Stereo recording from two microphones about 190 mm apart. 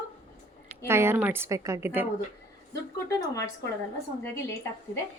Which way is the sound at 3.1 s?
15° left (ahead or behind).